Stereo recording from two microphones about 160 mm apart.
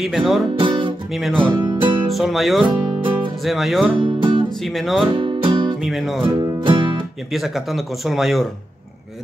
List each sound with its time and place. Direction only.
0.0 s speech: centre (ahead or behind)
0.6 s music: 30° right (ahead or behind)
1.1 s speech: centre (ahead or behind)
1.5 s music: 25° right (ahead or behind)
2.0 s speech: centre (ahead or behind)
3.0 s music: 30° right (ahead or behind)
3.4 s speech: centre (ahead or behind)
4.0 s music: 30° right (ahead or behind)
4.6 s speech: centre (ahead or behind)
5.1 s music: 30° right (ahead or behind)
5.8 s music: centre (ahead or behind)
6.6 s music: 30° right (ahead or behind)
7.3 s speech: centre (ahead or behind)